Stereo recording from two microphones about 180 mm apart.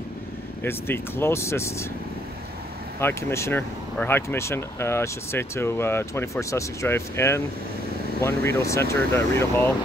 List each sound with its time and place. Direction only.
0.7 s speech: 10° left (ahead or behind)
3.0 s speech: 15° left (ahead or behind)